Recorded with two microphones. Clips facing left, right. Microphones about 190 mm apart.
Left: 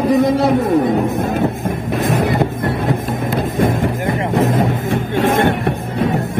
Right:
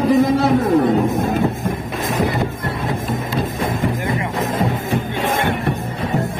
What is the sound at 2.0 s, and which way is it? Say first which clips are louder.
Music: left 3 dB; 60° left (ahead or behind).